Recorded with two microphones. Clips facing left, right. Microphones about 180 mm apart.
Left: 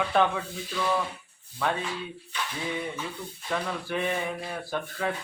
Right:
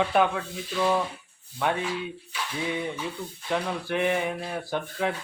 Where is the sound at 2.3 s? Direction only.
10° right (ahead or behind).